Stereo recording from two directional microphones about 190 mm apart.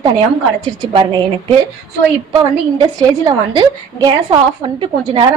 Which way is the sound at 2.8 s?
20° right (ahead or behind).